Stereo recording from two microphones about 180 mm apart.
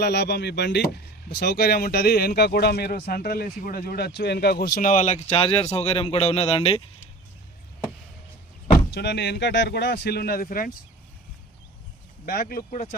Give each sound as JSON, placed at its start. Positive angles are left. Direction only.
{"t": 0.0, "sound": "speech", "side_deg": 65}
{"t": 8.9, "sound": "speech", "side_deg": 70}
{"t": 12.2, "sound": "speech", "side_deg": 55}